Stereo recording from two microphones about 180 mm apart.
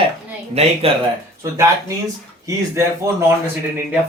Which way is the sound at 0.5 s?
35° right (ahead or behind).